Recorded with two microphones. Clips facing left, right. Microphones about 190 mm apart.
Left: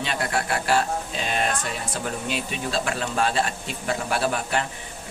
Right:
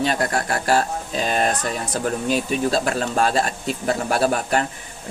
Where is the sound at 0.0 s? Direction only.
40° right (ahead or behind).